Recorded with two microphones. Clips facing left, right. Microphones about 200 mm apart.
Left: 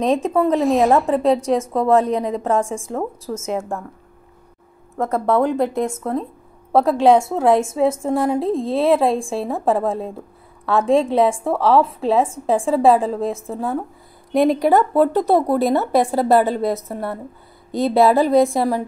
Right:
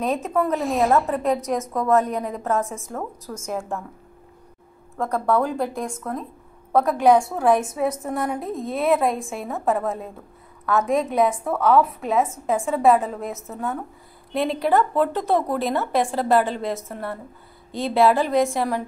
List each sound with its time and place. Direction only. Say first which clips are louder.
0.0 s speech: left 5 dB; 30° left (ahead or behind)
0.6 s a woman's voice: left 6 dB; centre (ahead or behind)
1.0 s a woman's voice: left 6 dB; 30° left (ahead or behind)
4.9 s a woman's voice: left 3 dB; 20° left (ahead or behind)
14.3 s speech: left 6 dB; 45° left (ahead or behind)